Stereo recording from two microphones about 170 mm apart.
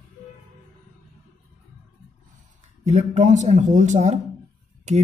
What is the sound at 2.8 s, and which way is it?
Speech, 45° right (ahead or behind).